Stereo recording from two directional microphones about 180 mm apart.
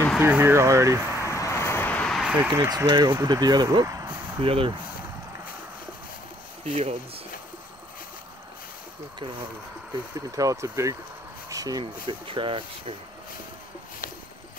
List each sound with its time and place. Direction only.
0.2 s speech: 10° right (ahead or behind)
1.2 s a sound: 15° left (ahead or behind); by 4.2 s 15° right (ahead or behind)
4.4 s speech: 30° right (ahead or behind)
6.6 s speech: 35° right (ahead or behind)
10.1 s speech: 20° right (ahead or behind)
11.4 s a sound: 20° right (ahead or behind)
12.1 s speech: 30° right (ahead or behind)